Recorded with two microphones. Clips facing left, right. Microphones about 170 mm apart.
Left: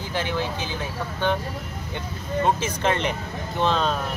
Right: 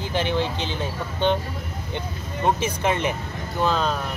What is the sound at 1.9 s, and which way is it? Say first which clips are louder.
Speech: left 5 dB; 15° right (ahead or behind).